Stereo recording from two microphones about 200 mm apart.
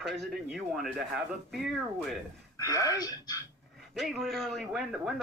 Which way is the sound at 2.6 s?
20° left (ahead or behind).